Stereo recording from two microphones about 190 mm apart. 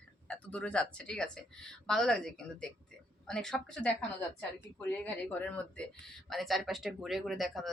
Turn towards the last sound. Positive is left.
turn(degrees=0)  # may be behind; listen again after turning